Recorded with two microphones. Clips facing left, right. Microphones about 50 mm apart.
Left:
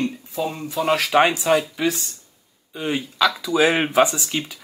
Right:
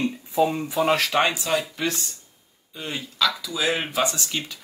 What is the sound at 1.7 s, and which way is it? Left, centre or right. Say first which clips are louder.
Speech: left 4 dB; centre.